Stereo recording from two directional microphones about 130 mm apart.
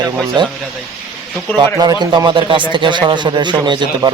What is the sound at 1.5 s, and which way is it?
Speech, 30° right (ahead or behind).